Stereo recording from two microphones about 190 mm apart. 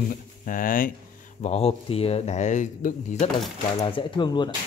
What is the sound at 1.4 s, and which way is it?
Speech, 35° left (ahead or behind).